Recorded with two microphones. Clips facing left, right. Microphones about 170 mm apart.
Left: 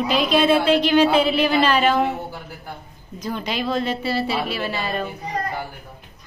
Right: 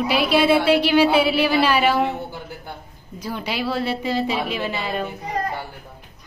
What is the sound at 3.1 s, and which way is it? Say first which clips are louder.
A woman's voice: left 1 dB; 10° right (ahead or behind).